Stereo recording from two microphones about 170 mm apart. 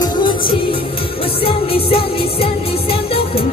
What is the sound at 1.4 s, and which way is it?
Music, 35° left (ahead or behind).